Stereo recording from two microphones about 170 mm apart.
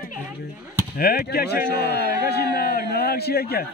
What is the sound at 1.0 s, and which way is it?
Speech, 65° left (ahead or behind).